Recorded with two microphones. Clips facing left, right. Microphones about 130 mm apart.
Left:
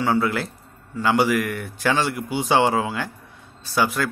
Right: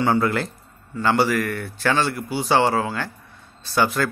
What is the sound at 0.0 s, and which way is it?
Speech, 5° left (ahead or behind).